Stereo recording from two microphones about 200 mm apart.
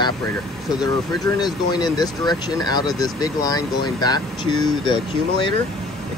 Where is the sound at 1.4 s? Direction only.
20° left (ahead or behind).